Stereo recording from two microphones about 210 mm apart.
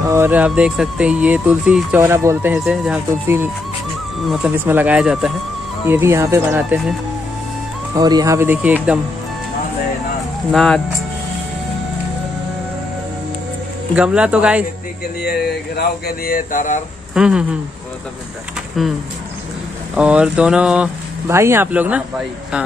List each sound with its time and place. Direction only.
0.0 s speech: 10° right (ahead or behind)
10.5 s speech: centre (ahead or behind)
13.9 s speech: 5° right (ahead or behind)
15.2 s speech: 50° left (ahead or behind)
17.1 s speech: 5° right (ahead or behind)
18.8 s speech: centre (ahead or behind)
20.0 s speech: 5° right (ahead or behind)